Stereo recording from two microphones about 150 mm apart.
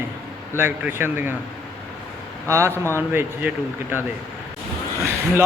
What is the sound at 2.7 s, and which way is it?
Speech, 15° left (ahead or behind).